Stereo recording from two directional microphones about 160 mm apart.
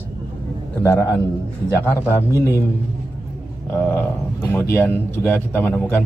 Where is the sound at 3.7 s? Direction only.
10° left (ahead or behind).